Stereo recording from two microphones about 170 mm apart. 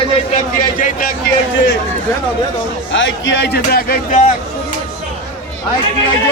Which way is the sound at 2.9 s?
90° left.